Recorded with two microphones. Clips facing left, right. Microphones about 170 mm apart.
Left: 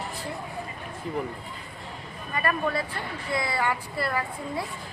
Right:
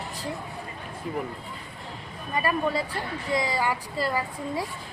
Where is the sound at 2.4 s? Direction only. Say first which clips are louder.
Even; 15° right (ahead or behind).